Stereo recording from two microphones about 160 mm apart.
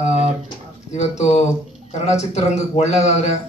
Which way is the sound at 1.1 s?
45° left (ahead or behind).